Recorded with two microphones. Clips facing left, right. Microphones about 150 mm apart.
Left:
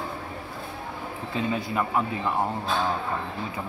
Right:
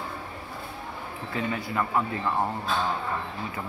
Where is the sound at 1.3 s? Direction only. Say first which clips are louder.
Left 2 dB; 20° left (ahead or behind).